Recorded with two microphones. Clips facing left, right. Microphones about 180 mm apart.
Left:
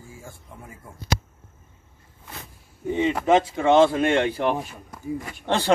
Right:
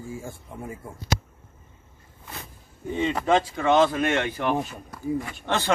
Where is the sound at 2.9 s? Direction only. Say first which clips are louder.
Left 3 dB; 15° left (ahead or behind).